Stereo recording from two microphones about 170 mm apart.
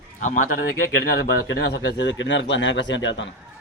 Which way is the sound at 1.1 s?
80° left.